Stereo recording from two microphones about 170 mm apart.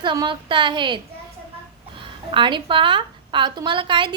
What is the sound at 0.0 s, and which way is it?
A woman's voice, 25° right (ahead or behind).